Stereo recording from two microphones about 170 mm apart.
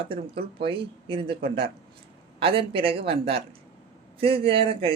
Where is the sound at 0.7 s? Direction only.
30° right (ahead or behind).